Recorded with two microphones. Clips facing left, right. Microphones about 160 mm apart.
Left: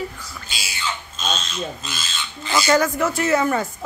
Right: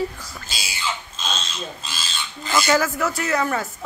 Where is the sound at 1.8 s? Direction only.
35° right (ahead or behind).